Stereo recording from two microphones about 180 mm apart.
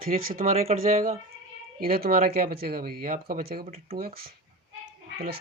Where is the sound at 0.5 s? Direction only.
40° right (ahead or behind).